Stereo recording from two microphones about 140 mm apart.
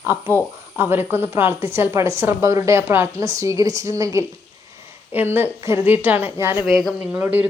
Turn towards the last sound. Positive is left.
turn(degrees=-15)  # may be behind; listen again after turning